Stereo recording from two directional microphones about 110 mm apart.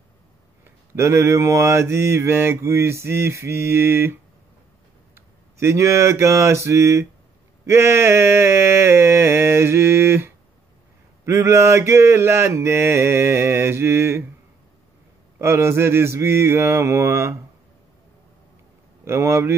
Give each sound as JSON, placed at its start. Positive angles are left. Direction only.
{"t": 0.9, "sound": "mantra", "side_deg": -25}
{"t": 15.3, "sound": "mantra", "side_deg": -25}
{"t": 19.0, "sound": "mantra", "side_deg": -25}